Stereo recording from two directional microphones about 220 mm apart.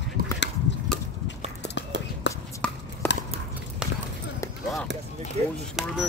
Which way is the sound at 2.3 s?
55° left (ahead or behind).